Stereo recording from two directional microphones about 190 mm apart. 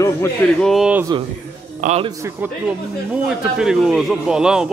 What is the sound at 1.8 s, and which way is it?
Speech, 40° right (ahead or behind).